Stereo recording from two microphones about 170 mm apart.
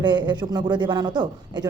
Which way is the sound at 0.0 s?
25° right (ahead or behind).